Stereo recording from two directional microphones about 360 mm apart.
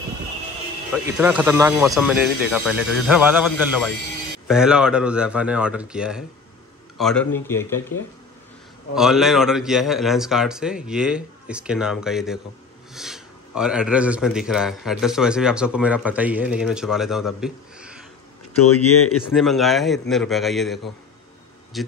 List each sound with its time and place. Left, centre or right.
0.9 s a man's voice: centre
8.9 s speech: centre
18.6 s speech: left
19.3 s speech: centre